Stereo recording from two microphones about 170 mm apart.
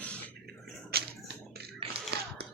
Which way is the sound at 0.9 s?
65° right (ahead or behind).